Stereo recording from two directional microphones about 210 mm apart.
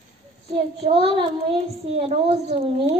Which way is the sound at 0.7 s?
25° right (ahead or behind).